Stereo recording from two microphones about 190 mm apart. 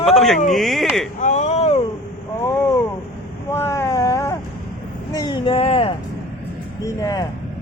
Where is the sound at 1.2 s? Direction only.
40° left (ahead or behind).